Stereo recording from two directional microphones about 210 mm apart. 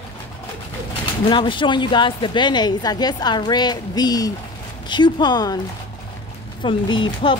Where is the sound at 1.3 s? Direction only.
25° left (ahead or behind).